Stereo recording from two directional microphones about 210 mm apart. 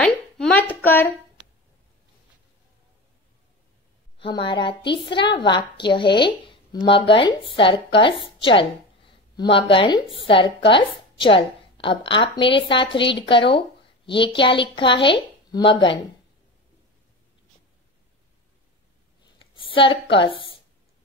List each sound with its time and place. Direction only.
0.0 s a woman's voice: 5° left (ahead or behind)
4.2 s a woman's voice: 25° left (ahead or behind)
19.5 s a sound: 25° left (ahead or behind)
20.2 s a woman's voice: 25° left (ahead or behind)